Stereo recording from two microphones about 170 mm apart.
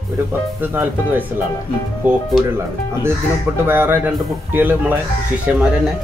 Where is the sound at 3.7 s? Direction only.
10° right (ahead or behind).